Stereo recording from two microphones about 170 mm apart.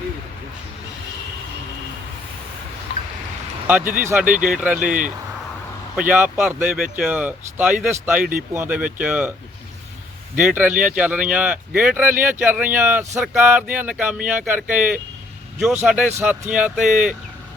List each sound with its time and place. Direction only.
3.9 s speech: 10° right (ahead or behind)
4.9 s speech: 50° right (ahead or behind)
6.0 s speech: 10° right (ahead or behind)
8.2 s speech: 55° right (ahead or behind)
8.5 s speech: 10° right (ahead or behind)
10.4 s speech: 10° right (ahead or behind)